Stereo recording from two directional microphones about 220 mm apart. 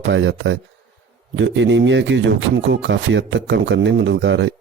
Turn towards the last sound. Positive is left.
turn(degrees=-55)  # may be behind; listen again after turning